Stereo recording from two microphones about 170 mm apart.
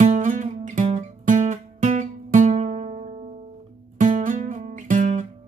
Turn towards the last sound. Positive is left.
turn(degrees=-50)  # may be behind; listen again after turning